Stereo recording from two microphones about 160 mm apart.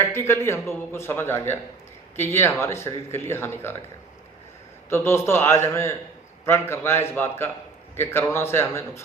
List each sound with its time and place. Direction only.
0.0 s speech: 15° left (ahead or behind)
4.9 s speech: 15° left (ahead or behind)